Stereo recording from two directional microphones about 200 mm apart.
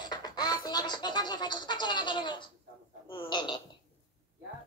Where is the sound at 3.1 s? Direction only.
25° left (ahead or behind).